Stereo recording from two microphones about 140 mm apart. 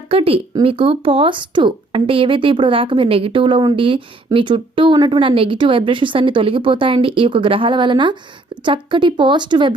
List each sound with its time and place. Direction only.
0.1 s speech: 45° right (ahead or behind)